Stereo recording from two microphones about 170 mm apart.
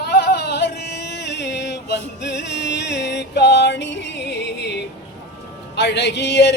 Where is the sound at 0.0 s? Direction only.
70° left (ahead or behind).